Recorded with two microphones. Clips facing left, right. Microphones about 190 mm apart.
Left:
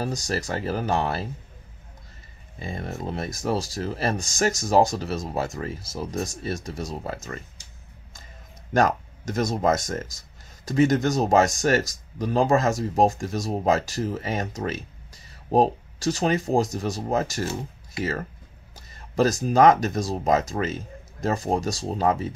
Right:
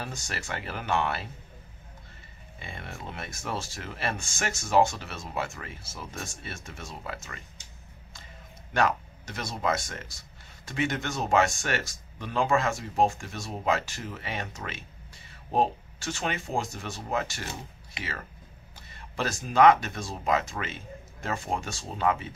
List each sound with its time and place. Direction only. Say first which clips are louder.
0.0 s speech: left 10 dB; 40° left (ahead or behind)
2.6 s speech: left 9 dB; 40° left (ahead or behind)
8.7 s speech: left 5 dB; 45° left (ahead or behind)
18.9 s speech: left 10 dB; 40° left (ahead or behind)